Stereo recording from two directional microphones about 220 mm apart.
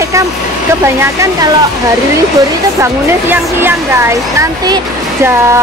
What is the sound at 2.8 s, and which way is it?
Speech, 10° right (ahead or behind).